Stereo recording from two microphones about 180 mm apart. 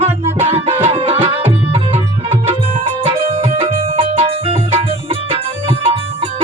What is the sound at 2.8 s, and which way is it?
Music, 30° right (ahead or behind).